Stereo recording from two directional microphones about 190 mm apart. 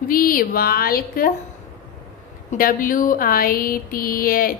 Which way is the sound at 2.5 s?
45° left (ahead or behind).